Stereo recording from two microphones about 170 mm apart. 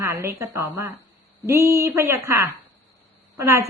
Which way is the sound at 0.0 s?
15° right (ahead or behind).